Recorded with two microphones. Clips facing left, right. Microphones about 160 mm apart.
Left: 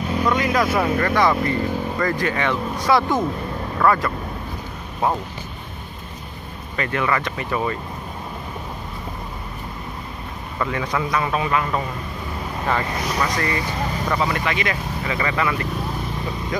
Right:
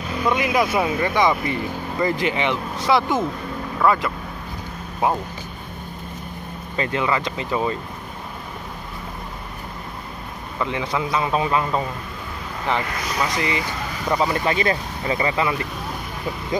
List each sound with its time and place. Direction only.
0.3 s speech: 15° right (ahead or behind)
3.0 s speech: 5° right (ahead or behind)
6.8 s speech: 20° right (ahead or behind)
10.6 s speech: 10° right (ahead or behind)
11.1 s speech: 25° right (ahead or behind)
14.1 s speech: 30° right (ahead or behind)